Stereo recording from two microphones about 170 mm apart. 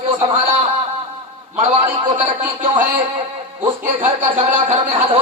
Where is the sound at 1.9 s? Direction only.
35° right (ahead or behind).